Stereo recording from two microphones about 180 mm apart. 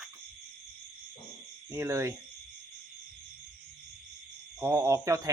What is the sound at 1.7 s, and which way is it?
Speech, 15° right (ahead or behind).